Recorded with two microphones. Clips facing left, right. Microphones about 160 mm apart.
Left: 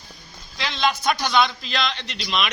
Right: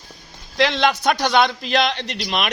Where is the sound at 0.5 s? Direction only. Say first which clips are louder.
Right 6 dB; 65° right (ahead or behind).